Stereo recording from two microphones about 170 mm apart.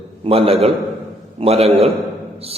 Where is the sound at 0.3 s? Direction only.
35° right (ahead or behind).